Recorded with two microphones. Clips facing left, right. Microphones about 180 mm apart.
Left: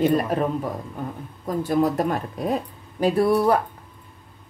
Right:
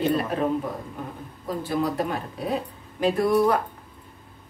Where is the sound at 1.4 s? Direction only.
45° left (ahead or behind).